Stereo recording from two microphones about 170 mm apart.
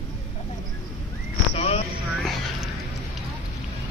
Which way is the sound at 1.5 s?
35° left (ahead or behind).